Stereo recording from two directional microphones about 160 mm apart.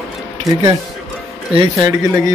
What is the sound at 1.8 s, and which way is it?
Speech, 20° right (ahead or behind).